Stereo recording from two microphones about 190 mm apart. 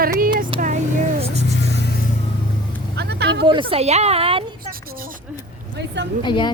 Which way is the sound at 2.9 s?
60° right (ahead or behind).